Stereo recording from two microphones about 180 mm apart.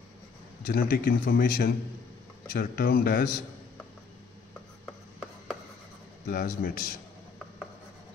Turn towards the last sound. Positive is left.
turn(degrees=50)  # may be behind; listen again after turning